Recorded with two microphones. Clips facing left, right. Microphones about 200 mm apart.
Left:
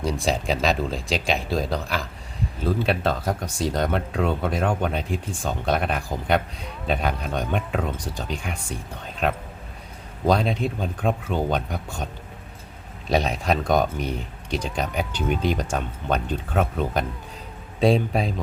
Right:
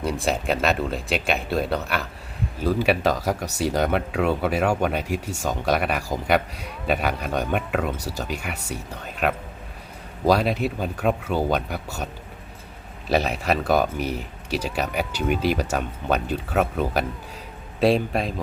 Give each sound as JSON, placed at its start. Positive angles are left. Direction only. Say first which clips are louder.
{"t": 0.0, "sound": "speech", "louder": "even", "side_deg": -5}
{"t": 3.2, "sound": "speech", "louder": "right 2 dB", "side_deg": -85}
{"t": 3.6, "sound": "speech", "louder": "right 2 dB", "side_deg": -10}
{"t": 13.1, "sound": "speech", "louder": "even", "side_deg": -5}